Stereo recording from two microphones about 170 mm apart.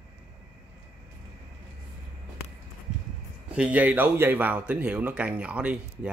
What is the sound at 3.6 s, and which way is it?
Speech, 10° right (ahead or behind).